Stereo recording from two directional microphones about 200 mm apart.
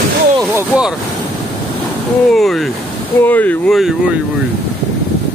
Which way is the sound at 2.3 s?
Centre (ahead or behind).